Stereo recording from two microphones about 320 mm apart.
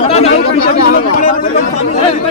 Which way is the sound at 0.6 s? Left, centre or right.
Left.